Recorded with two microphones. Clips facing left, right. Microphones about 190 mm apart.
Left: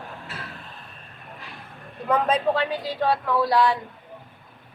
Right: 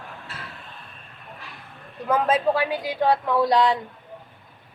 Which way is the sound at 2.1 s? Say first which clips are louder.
Right 1 dB; 5° right (ahead or behind).